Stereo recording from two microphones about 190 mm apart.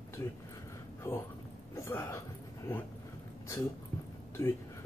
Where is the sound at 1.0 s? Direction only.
10° left (ahead or behind).